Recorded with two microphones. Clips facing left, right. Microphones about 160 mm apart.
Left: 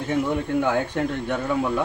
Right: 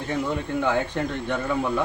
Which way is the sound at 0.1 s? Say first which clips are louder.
Left 3 dB; 10° left (ahead or behind).